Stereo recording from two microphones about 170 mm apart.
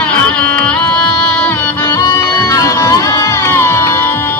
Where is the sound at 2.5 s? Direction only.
20° left (ahead or behind).